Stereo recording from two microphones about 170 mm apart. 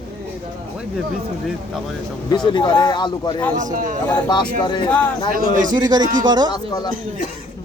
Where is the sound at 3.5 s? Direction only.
45° right (ahead or behind).